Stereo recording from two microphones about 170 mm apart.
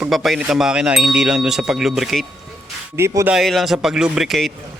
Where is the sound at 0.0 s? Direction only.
Centre (ahead or behind).